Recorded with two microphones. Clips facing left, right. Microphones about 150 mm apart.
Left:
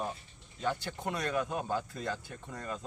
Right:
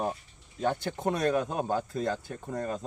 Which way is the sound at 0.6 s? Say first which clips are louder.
Right 6 dB; 50° right (ahead or behind).